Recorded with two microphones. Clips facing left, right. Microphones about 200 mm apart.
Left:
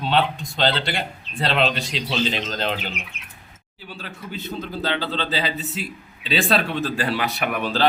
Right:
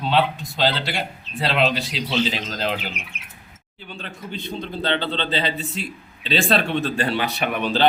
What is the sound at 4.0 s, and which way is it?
A man's voice, 5° left (ahead or behind).